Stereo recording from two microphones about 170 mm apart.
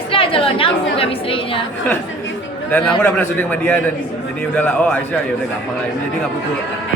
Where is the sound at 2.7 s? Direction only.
10° left (ahead or behind).